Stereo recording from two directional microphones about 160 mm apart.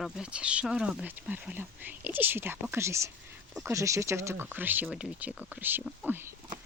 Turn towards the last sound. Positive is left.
turn(degrees=-15)  # may be behind; listen again after turning